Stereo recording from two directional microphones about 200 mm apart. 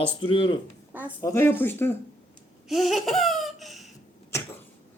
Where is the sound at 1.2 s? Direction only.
15° left (ahead or behind).